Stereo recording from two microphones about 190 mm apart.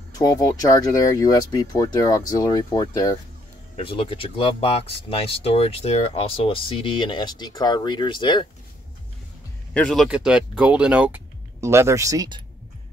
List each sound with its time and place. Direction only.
0.1 s speech: 20° left (ahead or behind)
9.8 s speech: centre (ahead or behind); by 12.4 s 20° right (ahead or behind)